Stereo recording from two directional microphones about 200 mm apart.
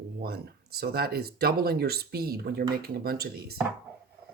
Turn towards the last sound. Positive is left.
turn(degrees=-50)  # may be behind; listen again after turning